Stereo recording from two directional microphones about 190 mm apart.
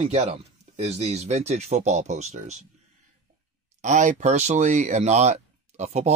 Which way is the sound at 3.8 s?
40° right (ahead or behind).